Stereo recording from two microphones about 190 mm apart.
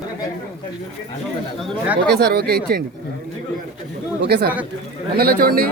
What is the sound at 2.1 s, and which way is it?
Speech, 55° right (ahead or behind).